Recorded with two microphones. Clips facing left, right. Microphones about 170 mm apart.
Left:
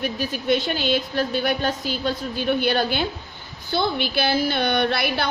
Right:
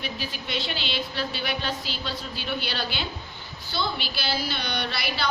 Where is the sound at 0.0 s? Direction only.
50° left (ahead or behind).